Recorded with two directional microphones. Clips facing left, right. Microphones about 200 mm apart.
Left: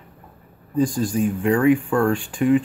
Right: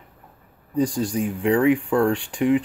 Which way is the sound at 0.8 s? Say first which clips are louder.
Left 2 dB; 15° right (ahead or behind).